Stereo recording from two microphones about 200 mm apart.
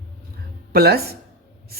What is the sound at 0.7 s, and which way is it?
Speech, 50° right (ahead or behind).